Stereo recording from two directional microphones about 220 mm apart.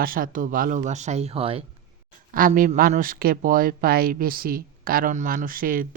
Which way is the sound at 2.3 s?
40° right (ahead or behind).